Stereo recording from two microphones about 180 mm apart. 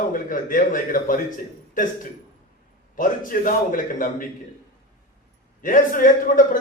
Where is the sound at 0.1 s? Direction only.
50° left (ahead or behind).